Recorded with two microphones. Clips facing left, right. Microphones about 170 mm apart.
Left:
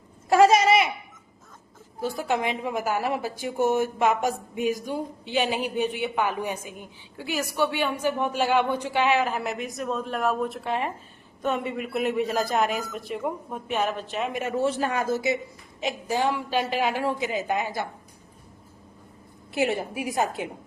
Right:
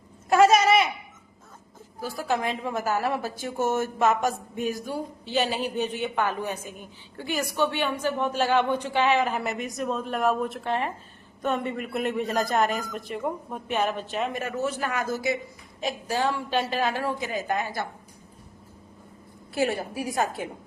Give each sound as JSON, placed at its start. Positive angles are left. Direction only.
{"t": 0.3, "sound": "a sound", "side_deg": 25}
{"t": 2.0, "sound": "a woman's voice", "side_deg": 20}
{"t": 14.5, "sound": "a woman's voice", "side_deg": 30}
{"t": 19.5, "sound": "a woman's voice", "side_deg": 20}